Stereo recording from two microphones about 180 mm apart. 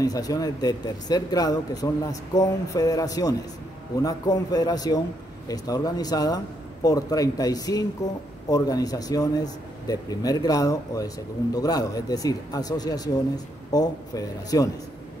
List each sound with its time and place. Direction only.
0.0 s a man's voice: 20° left (ahead or behind)